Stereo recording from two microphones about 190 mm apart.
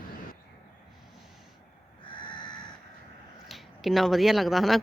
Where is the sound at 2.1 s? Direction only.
25° left (ahead or behind).